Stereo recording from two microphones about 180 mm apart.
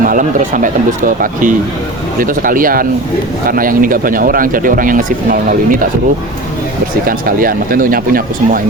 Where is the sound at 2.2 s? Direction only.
50° right (ahead or behind).